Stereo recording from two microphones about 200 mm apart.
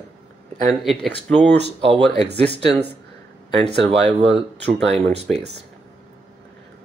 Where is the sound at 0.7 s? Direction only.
Centre (ahead or behind).